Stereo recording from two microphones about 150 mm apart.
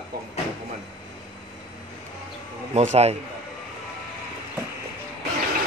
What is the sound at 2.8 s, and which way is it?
Speech, 45° right (ahead or behind).